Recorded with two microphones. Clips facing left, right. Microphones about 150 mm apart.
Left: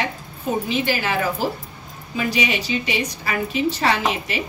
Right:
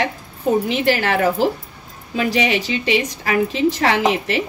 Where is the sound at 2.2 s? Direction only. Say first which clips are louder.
Right 4 dB; 80° right.